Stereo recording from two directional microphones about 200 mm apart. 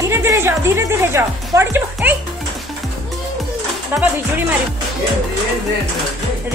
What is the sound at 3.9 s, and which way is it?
Speech, 10° right (ahead or behind).